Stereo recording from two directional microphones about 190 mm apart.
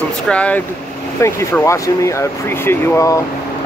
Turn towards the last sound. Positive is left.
turn(degrees=15)  # may be behind; listen again after turning